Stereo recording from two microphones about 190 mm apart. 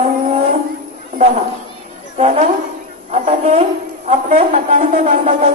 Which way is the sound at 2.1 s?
35° right (ahead or behind).